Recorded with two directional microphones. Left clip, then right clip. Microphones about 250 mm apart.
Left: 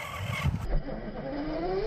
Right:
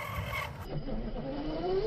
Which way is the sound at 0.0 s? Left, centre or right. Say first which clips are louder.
Left 1 dB; centre.